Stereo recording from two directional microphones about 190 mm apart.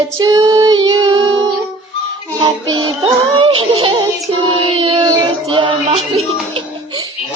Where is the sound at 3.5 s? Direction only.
25° right (ahead or behind).